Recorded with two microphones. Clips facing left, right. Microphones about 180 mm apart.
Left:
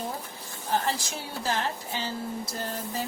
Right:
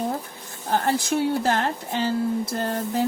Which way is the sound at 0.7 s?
55° right (ahead or behind).